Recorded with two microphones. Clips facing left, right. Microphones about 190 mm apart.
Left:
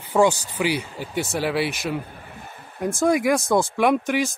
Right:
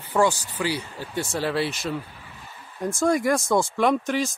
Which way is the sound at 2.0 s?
50° left (ahead or behind).